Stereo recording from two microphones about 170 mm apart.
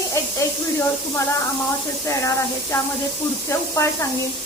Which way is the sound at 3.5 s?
15° left (ahead or behind).